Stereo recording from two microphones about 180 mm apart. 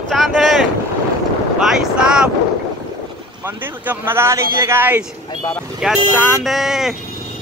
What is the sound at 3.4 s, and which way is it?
Speech, 10° right (ahead or behind).